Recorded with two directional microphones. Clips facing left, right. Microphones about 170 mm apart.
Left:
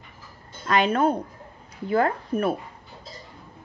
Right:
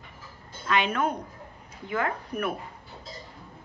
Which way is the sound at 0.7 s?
35° left (ahead or behind).